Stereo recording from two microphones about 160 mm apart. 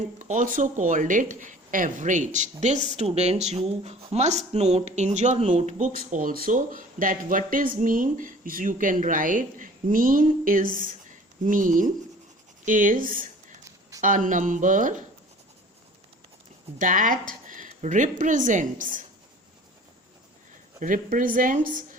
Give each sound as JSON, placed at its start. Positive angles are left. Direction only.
{"t": 0.2, "sound": "speech", "side_deg": -50}
{"t": 6.1, "sound": "speech", "side_deg": -55}
{"t": 16.7, "sound": "a woman's voice", "side_deg": -55}
{"t": 20.7, "sound": "speech", "side_deg": -55}